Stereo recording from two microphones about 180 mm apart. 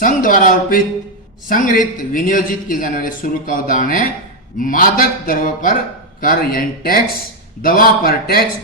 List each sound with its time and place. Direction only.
0.0 s a man's voice: 50° left (ahead or behind)